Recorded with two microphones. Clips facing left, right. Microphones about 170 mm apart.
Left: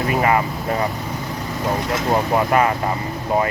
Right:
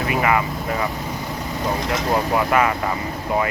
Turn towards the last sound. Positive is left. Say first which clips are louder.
# left 1 dB
turn(degrees=30)  # may be behind; listen again after turning